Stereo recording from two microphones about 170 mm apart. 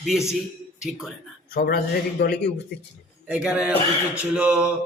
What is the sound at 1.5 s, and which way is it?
Speech, 65° left (ahead or behind).